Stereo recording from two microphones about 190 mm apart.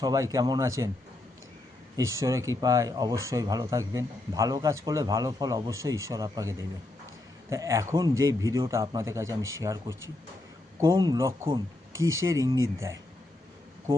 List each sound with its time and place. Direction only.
0.0 s speech: 20° right (ahead or behind)
2.1 s speech: 15° right (ahead or behind)
11.9 s speech: 90° right
12.2 s speech: 15° right (ahead or behind)